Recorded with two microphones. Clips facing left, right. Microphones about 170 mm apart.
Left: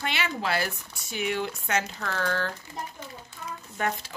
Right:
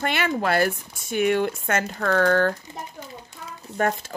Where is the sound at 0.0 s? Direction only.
50° right (ahead or behind).